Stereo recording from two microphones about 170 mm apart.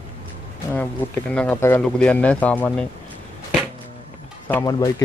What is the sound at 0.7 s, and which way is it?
Speech, 10° left (ahead or behind).